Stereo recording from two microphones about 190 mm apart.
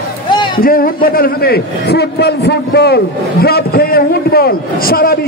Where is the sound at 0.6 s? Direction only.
50° left (ahead or behind).